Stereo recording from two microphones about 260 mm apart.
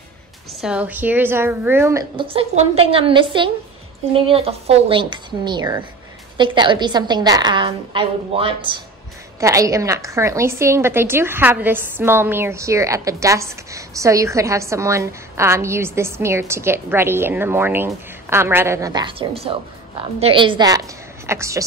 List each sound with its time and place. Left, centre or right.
0.6 s a woman's voice: centre